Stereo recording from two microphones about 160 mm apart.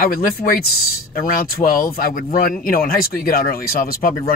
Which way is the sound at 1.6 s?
65° left (ahead or behind).